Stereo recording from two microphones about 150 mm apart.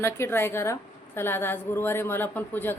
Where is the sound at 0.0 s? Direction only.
15° left (ahead or behind).